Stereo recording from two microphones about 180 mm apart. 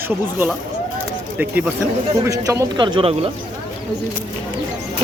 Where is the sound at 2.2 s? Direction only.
20° right (ahead or behind).